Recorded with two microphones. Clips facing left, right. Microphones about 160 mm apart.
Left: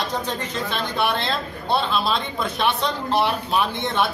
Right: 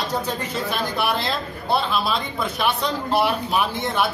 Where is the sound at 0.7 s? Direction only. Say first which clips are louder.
Even; 5° right (ahead or behind).